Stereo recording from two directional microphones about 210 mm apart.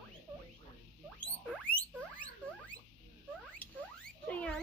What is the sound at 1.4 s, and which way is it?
Rodents, 5° right (ahead or behind).